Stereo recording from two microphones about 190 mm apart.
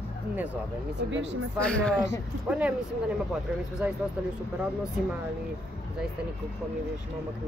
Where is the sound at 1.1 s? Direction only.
70° right (ahead or behind).